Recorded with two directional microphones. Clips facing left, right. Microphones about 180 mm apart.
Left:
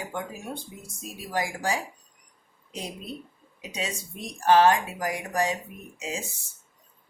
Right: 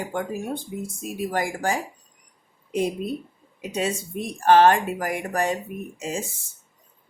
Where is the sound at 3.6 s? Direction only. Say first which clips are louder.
Right 8 dB; 50° right (ahead or behind).